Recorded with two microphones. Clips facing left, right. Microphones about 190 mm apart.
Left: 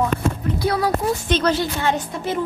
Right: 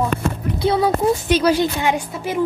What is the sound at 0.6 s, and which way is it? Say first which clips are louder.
Speech: right 4 dB; 25° right (ahead or behind).